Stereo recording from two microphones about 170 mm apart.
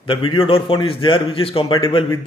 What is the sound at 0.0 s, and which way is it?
A man's voice, 30° left (ahead or behind).